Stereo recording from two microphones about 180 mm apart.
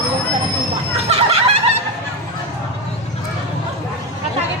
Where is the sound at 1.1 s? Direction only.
35° right (ahead or behind).